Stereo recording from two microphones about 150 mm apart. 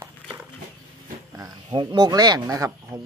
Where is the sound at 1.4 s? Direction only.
30° right (ahead or behind).